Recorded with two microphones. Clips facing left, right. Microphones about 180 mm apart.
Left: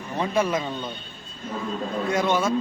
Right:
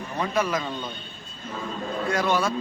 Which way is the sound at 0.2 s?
25° left (ahead or behind).